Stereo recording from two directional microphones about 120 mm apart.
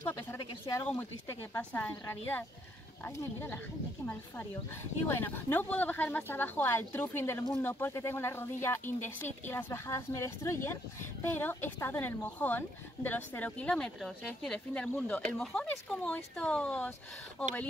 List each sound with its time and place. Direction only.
0.0 s speech: 20° left (ahead or behind)
0.4 s a sound: 40° left (ahead or behind)
1.5 s a woman's voice: 15° left (ahead or behind)
5.0 s a woman's voice: 20° left (ahead or behind)